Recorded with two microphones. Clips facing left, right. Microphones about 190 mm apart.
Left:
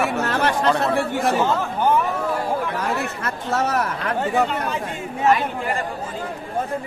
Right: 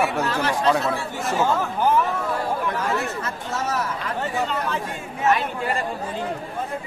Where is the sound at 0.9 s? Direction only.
60° left (ahead or behind).